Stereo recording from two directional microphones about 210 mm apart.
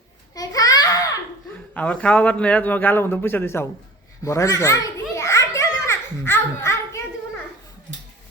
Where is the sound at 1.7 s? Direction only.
5° left (ahead or behind).